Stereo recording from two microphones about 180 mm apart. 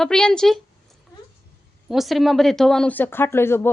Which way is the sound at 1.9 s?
Centre (ahead or behind).